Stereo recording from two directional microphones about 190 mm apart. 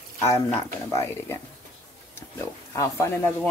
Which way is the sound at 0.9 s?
15° left (ahead or behind).